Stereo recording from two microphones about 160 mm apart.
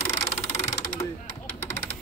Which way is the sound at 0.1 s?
40° left (ahead or behind).